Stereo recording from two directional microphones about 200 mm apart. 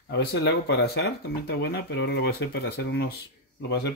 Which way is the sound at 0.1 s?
55° left (ahead or behind).